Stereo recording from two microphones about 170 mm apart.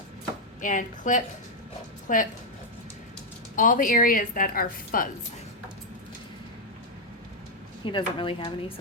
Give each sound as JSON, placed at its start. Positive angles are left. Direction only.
{"t": 0.6, "sound": "a woman's voice", "side_deg": 50}
{"t": 3.5, "sound": "speech", "side_deg": 50}
{"t": 7.9, "sound": "speech", "side_deg": 30}